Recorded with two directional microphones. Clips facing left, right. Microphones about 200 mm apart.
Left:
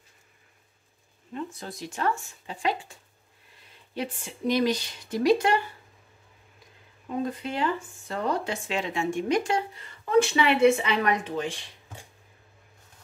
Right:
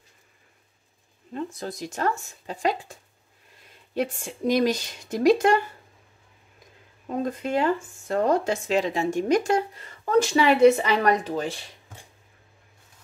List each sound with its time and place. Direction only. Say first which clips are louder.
1.3 s speech: right 4 dB; 40° right (ahead or behind)
7.2 s speech: right 7 dB; 45° right (ahead or behind)